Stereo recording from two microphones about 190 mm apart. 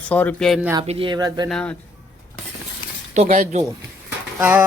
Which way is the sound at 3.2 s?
45° right (ahead or behind).